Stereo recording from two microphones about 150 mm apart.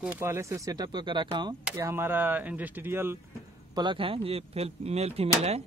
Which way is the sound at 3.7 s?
30° right (ahead or behind).